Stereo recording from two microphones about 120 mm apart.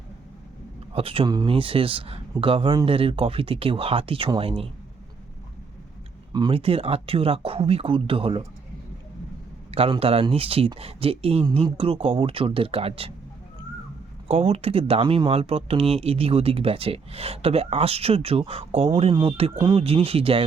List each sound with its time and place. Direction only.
0.9 s speech: 50° right (ahead or behind)
1.3 s speech: 40° right (ahead or behind)
6.5 s speech: 55° right (ahead or behind)
9.7 s speech: 55° right (ahead or behind)
14.3 s speech: 55° right (ahead or behind)